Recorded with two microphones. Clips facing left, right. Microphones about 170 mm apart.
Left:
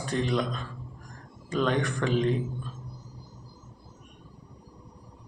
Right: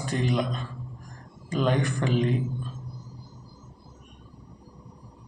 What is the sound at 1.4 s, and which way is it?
Speech, 5° right (ahead or behind).